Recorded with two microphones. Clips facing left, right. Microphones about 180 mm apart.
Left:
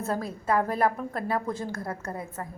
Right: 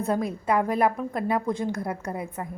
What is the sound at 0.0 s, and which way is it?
A woman's voice, 15° right (ahead or behind).